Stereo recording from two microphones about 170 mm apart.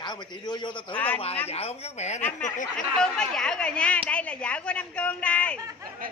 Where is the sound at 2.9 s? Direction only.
5° left (ahead or behind).